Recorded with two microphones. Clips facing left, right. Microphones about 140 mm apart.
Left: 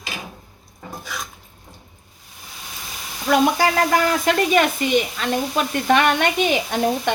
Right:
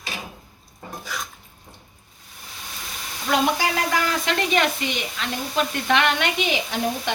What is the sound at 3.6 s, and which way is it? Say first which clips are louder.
A woman's voice: left 5 dB; 45° left (ahead or behind).